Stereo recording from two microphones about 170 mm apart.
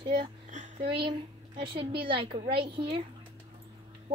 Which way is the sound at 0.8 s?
30° right (ahead or behind).